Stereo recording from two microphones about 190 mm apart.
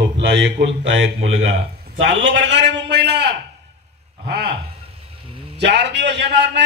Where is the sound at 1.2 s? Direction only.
90° right.